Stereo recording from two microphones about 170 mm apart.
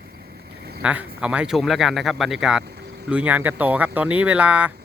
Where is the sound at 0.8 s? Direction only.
5° right (ahead or behind).